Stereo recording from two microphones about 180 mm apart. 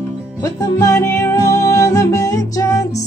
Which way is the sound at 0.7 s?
15° left (ahead or behind).